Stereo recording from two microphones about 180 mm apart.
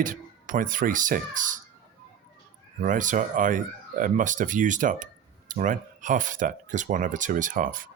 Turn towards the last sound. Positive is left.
turn(degrees=-50)  # may be behind; listen again after turning